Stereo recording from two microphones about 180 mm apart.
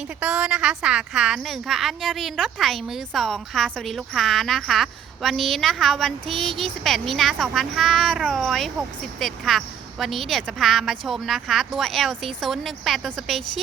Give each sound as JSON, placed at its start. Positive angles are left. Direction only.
{"t": 0.2, "sound": "a woman's voice", "side_deg": -5}